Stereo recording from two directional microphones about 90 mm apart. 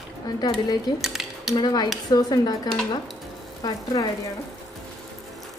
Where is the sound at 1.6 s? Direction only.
50° left (ahead or behind).